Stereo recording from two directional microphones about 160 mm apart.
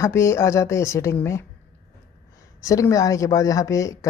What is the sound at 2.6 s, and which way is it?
Speech, 20° left (ahead or behind).